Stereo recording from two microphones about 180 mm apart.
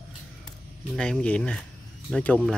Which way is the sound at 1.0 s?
5° left (ahead or behind).